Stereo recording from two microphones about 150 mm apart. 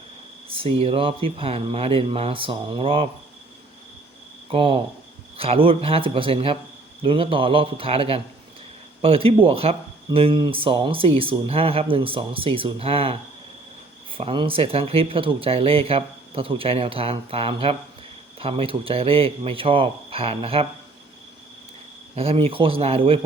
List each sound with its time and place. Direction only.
0.4 s speech: 35° right (ahead or behind)
4.4 s speech: 35° right (ahead or behind)
22.1 s speech: 40° right (ahead or behind)